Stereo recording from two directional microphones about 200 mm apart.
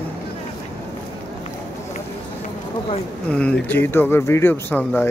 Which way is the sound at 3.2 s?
5° left (ahead or behind).